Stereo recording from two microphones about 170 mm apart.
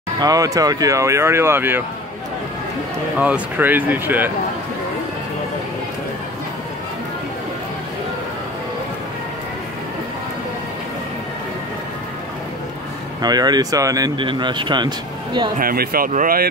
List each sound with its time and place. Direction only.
0.2 s speech: 20° right (ahead or behind)
3.2 s speech: 10° right (ahead or behind)
13.2 s speech: 25° right (ahead or behind)
15.6 s speech: 60° right (ahead or behind)